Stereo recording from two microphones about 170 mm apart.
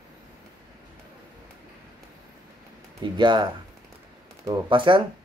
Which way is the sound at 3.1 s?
25° right (ahead or behind).